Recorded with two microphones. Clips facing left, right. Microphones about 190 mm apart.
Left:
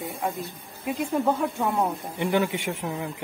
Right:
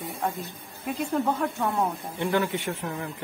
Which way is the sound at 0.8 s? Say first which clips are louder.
Left 2 dB; 10° left (ahead or behind).